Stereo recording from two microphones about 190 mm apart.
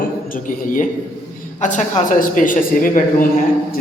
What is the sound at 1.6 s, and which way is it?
A man's voice, 45° left (ahead or behind).